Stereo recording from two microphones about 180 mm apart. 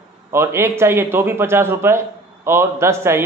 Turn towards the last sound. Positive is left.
turn(degrees=-15)  # may be behind; listen again after turning